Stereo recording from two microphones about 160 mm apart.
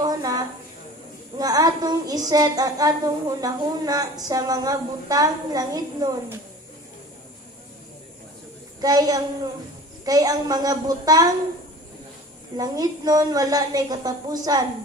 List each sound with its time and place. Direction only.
0.0 s a sound: 25° right (ahead or behind)
1.4 s child singing: 20° right (ahead or behind)
8.8 s child singing: 25° right (ahead or behind)
12.5 s child singing: 25° right (ahead or behind)